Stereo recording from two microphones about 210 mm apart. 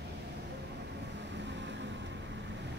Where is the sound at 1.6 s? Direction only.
60° right (ahead or behind).